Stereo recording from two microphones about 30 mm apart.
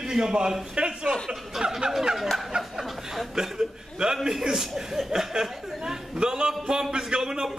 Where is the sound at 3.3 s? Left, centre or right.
Right.